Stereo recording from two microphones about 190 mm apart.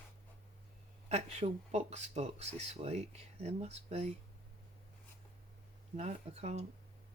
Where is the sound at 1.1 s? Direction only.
35° right (ahead or behind).